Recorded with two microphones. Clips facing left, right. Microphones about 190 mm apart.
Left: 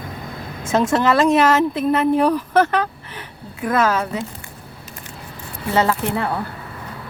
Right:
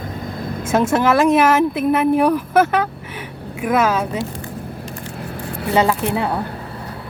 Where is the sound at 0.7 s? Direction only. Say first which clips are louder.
Right 1 dB; 10° right (ahead or behind).